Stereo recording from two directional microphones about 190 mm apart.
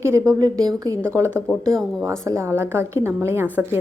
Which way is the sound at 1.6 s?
Centre (ahead or behind).